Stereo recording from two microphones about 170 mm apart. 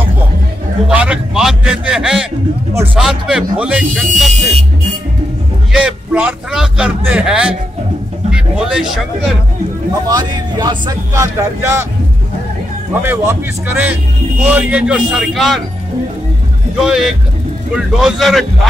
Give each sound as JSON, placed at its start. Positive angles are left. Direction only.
{"t": 0.8, "sound": "speech", "side_deg": -5}
{"t": 4.3, "sound": "speech", "side_deg": -40}
{"t": 5.7, "sound": "speech", "side_deg": -5}
{"t": 10.0, "sound": "speech", "side_deg": -25}
{"t": 13.0, "sound": "speech", "side_deg": -15}
{"t": 16.7, "sound": "speech", "side_deg": -5}